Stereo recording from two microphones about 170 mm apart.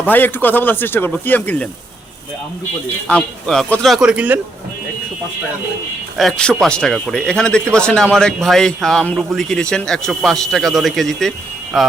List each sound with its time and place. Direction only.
0.0 s a man's voice: 10° left (ahead or behind)
3.1 s a man's voice: 5° left (ahead or behind)
6.1 s a man's voice: centre (ahead or behind)